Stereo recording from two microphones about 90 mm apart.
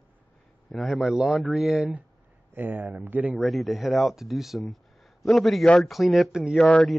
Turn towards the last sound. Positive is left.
turn(degrees=5)  # may be behind; listen again after turning